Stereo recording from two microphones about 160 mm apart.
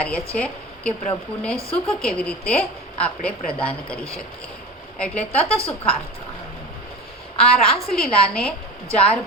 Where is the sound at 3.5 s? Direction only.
35° left (ahead or behind).